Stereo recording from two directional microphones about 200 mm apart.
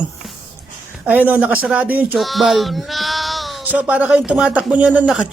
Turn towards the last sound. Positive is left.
turn(degrees=-5)  # may be behind; listen again after turning